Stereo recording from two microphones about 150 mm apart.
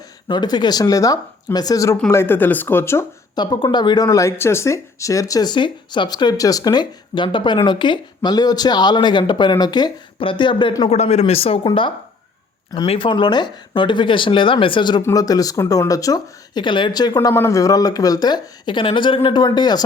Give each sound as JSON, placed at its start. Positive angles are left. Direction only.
{"t": 0.3, "sound": "speech", "side_deg": 30}
{"t": 3.3, "sound": "speech", "side_deg": 30}
{"t": 12.9, "sound": "speech", "side_deg": 35}
{"t": 17.2, "sound": "speech", "side_deg": 15}